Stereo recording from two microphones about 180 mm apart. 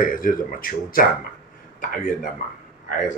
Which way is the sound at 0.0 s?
50° left (ahead or behind).